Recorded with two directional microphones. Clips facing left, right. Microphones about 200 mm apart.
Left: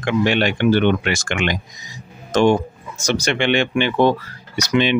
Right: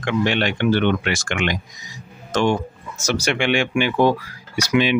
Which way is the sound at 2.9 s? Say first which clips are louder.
Left 1 dB; 5° right (ahead or behind).